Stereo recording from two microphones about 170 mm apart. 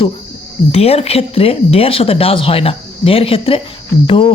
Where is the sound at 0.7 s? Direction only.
35° left (ahead or behind).